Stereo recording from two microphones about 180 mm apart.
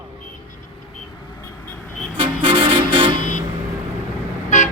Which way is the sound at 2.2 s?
30° right (ahead or behind).